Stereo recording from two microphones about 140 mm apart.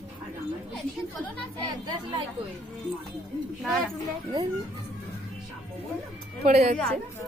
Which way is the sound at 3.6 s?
Centre (ahead or behind).